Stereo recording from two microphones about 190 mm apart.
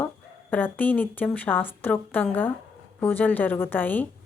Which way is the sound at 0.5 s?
10° left (ahead or behind).